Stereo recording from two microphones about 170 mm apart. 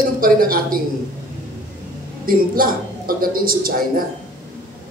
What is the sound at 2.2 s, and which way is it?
A man's voice, 60° right (ahead or behind).